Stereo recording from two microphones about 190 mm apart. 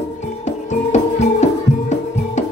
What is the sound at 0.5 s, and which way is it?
Music, 40° left (ahead or behind).